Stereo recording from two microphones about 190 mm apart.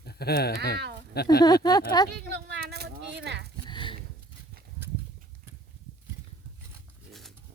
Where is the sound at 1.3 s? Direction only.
20° left (ahead or behind).